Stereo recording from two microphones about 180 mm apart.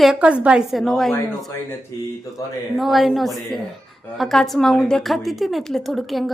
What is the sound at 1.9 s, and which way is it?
Speech, 20° left (ahead or behind).